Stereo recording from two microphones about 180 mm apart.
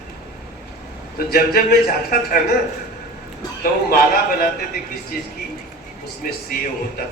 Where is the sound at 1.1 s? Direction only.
55° left (ahead or behind).